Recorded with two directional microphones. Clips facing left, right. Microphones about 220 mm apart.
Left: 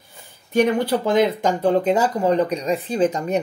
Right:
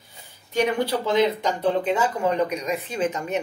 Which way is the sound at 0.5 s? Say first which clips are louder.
Left 4 dB; 50° left (ahead or behind).